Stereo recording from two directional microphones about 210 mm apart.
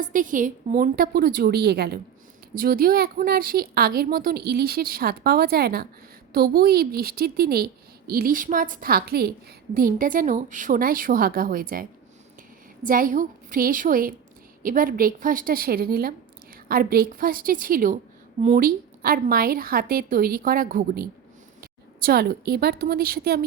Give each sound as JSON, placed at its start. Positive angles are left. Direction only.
{"t": 0.0, "sound": "a woman's voice", "side_deg": -40}